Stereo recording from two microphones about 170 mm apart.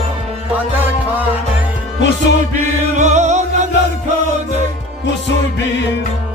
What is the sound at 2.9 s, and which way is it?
Music, 45° right (ahead or behind).